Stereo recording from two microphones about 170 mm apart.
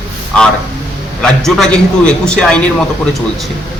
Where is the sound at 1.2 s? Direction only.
5° left (ahead or behind).